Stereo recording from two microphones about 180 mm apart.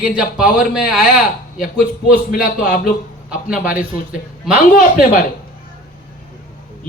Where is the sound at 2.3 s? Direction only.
50° left (ahead or behind).